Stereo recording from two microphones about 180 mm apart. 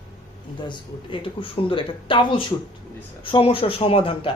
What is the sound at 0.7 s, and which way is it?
Speech, 30° left (ahead or behind).